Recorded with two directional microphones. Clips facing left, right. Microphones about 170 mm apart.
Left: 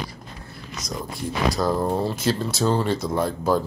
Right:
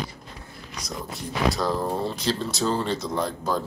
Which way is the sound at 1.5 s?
5° left (ahead or behind).